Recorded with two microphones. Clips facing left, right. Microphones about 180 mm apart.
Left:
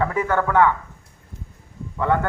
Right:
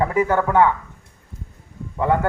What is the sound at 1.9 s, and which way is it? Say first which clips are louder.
Speech: right 2 dB; 20° right (ahead or behind).